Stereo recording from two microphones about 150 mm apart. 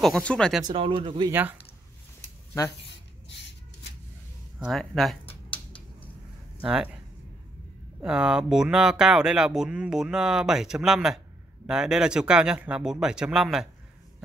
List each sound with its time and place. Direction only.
0.0 s speech: 5° left (ahead or behind)
0.7 s speech: 35° right (ahead or behind)
4.6 s speech: centre (ahead or behind)
6.6 s speech: 5° right (ahead or behind)
8.0 s speech: 5° right (ahead or behind)